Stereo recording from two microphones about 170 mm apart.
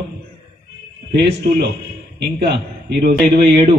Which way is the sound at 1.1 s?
80° right.